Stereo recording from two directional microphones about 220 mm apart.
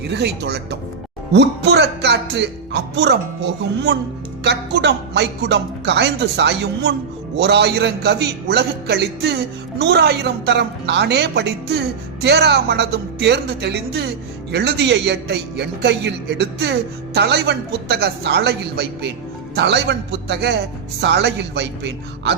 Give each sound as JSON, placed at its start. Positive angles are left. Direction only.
{"t": 0.1, "sound": "a man's voice", "side_deg": -50}